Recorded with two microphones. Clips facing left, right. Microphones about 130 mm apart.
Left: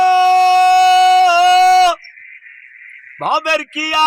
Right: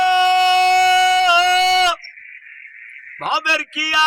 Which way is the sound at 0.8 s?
30° left (ahead or behind).